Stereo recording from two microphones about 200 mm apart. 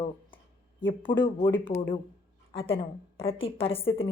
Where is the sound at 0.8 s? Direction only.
25° left (ahead or behind).